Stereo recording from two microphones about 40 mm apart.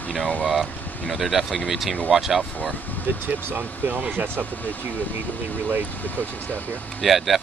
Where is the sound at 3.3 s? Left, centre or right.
Right.